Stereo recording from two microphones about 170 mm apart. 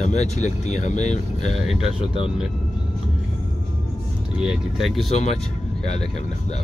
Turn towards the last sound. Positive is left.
turn(degrees=40)  # may be behind; listen again after turning